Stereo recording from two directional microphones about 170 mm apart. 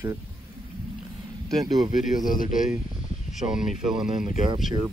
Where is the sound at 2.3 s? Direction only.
50° left (ahead or behind).